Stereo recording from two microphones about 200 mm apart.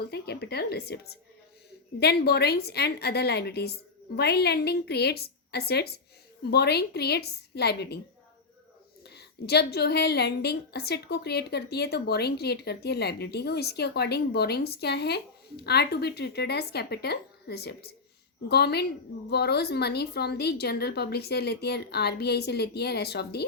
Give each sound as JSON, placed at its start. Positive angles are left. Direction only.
{"t": 0.1, "sound": "a woman's voice", "side_deg": 55}
{"t": 9.0, "sound": "a woman's voice", "side_deg": 55}